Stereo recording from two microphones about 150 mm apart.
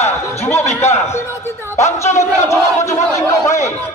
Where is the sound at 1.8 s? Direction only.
50° left (ahead or behind).